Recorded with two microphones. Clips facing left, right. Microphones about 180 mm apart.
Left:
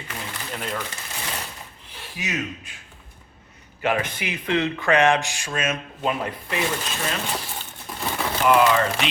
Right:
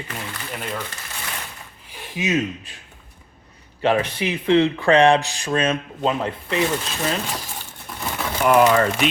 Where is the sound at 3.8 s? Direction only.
30° right (ahead or behind).